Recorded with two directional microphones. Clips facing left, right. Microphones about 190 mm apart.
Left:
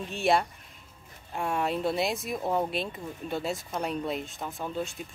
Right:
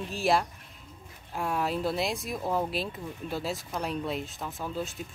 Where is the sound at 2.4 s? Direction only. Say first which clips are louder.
Left 1 dB; 20° left (ahead or behind).